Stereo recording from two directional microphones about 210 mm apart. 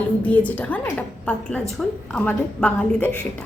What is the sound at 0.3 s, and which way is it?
A woman's voice, 5° left (ahead or behind).